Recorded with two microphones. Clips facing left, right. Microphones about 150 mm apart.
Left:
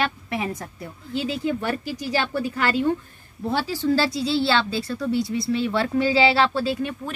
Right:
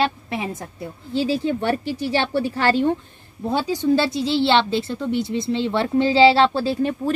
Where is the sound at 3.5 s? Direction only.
20° right (ahead or behind).